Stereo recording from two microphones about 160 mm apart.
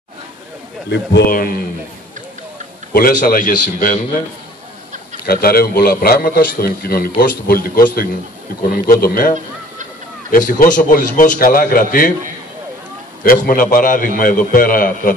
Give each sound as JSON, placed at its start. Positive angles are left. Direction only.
{"t": 0.8, "sound": "a man's voice", "side_deg": 90}
{"t": 2.9, "sound": "a man's voice", "side_deg": 65}
{"t": 5.2, "sound": "a man's voice", "side_deg": 70}
{"t": 10.3, "sound": "a man's voice", "side_deg": 55}
{"t": 13.2, "sound": "a man's voice", "side_deg": 60}